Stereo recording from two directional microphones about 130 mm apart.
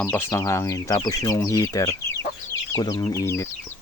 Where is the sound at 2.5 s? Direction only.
25° left (ahead or behind).